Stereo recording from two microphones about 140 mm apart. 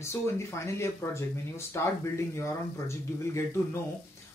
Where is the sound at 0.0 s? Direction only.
20° left (ahead or behind).